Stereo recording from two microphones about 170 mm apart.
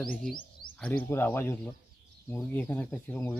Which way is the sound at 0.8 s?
10° left (ahead or behind).